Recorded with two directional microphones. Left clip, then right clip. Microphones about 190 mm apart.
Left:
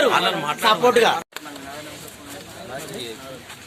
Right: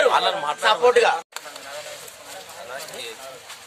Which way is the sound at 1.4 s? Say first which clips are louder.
Left 1 dB; 55° right (ahead or behind).